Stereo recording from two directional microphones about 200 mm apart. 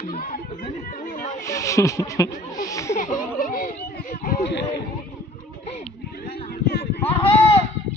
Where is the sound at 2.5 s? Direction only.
15° left (ahead or behind).